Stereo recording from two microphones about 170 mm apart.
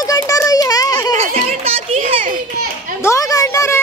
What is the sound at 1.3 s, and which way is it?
Children playing, 40° right (ahead or behind).